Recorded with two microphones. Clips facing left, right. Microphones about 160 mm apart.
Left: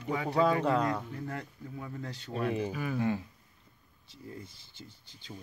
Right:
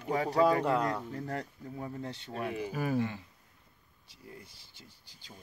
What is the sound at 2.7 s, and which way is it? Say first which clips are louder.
Speech: right 3 dB; 40° right (ahead or behind).